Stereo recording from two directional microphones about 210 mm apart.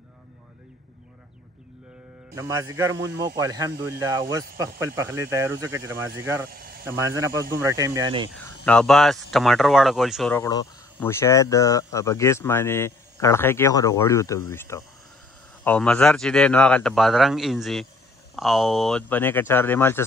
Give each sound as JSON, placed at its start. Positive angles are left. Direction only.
{"t": 2.3, "sound": "speech", "side_deg": -15}
{"t": 6.4, "sound": "speech", "side_deg": -45}
{"t": 6.8, "sound": "speech", "side_deg": -10}
{"t": 8.6, "sound": "speech", "side_deg": 5}
{"t": 10.3, "sound": "speech", "side_deg": 15}